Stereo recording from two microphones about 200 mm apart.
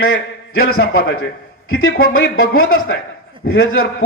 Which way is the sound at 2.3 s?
90° left.